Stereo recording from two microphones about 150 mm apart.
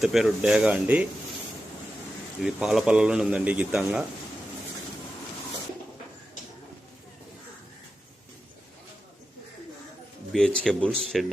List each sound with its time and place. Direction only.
0.0 s speech: centre (ahead or behind)
2.4 s a man's voice: centre (ahead or behind)
10.3 s speech: 5° left (ahead or behind)